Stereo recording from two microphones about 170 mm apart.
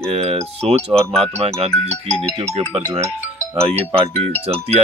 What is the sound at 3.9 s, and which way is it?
Speech, 40° right (ahead or behind).